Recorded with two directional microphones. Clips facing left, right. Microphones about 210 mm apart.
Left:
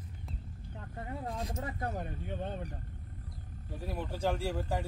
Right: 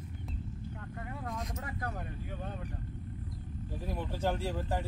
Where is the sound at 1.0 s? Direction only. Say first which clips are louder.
Left 2 dB; 30° left (ahead or behind).